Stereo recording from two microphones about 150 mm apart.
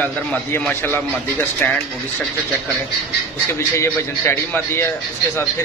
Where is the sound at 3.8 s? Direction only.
15° left (ahead or behind).